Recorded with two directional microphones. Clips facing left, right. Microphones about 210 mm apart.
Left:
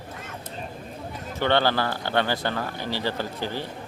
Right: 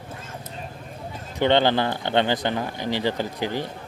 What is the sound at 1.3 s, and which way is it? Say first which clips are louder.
Speech: right 3 dB; 20° right (ahead or behind).